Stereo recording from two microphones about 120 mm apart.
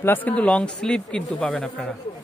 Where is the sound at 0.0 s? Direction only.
15° left (ahead or behind).